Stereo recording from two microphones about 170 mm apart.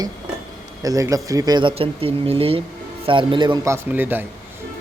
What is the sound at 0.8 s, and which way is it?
Speech, 20° right (ahead or behind).